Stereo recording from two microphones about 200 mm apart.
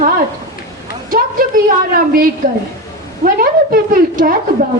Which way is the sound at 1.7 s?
45° right (ahead or behind).